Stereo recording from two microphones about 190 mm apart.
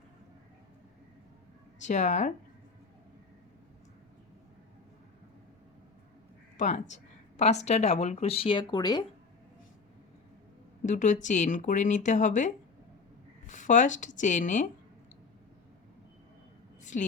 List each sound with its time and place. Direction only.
1.8 s speech: 40° left (ahead or behind)
6.6 s speech: 40° left (ahead or behind); by 9.0 s 20° left (ahead or behind)
10.8 s speech: 40° left (ahead or behind)
13.5 s speech: 40° left (ahead or behind)